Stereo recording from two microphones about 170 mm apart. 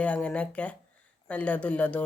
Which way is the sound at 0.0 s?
5° left (ahead or behind).